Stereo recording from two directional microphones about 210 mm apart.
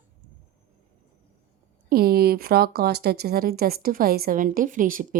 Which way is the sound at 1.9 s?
45° right (ahead or behind).